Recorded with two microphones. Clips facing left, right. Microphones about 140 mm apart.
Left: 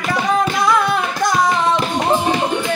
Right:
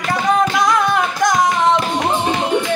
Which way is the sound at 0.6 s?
20° right (ahead or behind).